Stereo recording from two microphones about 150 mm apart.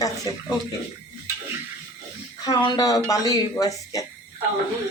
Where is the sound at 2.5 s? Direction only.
30° left (ahead or behind).